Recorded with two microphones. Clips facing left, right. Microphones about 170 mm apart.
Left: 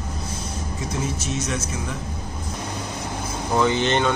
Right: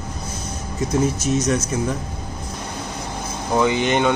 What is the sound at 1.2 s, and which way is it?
Speech, 40° right (ahead or behind).